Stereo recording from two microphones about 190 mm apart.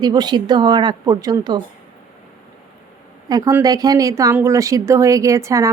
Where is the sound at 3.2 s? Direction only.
20° right (ahead or behind).